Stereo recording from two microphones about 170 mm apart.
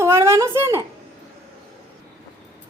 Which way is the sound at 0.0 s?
15° right (ahead or behind).